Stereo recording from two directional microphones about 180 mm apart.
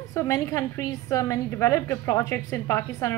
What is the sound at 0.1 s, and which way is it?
A woman's voice, 15° left (ahead or behind).